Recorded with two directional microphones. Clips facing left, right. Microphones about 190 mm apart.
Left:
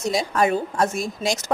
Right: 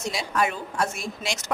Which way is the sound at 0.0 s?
40° left (ahead or behind).